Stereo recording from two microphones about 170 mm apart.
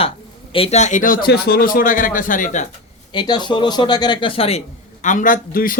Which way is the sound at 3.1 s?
25° left (ahead or behind).